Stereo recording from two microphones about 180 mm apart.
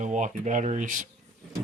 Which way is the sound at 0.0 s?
45° right (ahead or behind).